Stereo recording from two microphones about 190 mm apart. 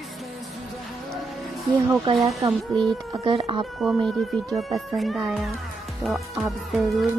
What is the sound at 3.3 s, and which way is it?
Speech, 30° right (ahead or behind).